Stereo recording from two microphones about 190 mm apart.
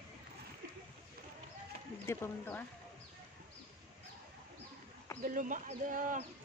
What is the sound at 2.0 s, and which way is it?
Speech, 10° left (ahead or behind).